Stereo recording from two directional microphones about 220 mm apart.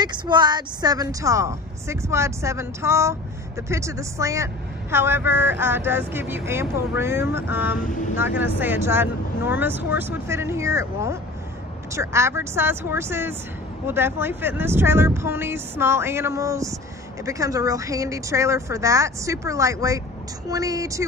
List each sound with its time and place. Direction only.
0.0 s a woman's voice: 20° right (ahead or behind)
7.8 s speech: 35° left (ahead or behind)
8.2 s a woman's voice: 10° right (ahead or behind)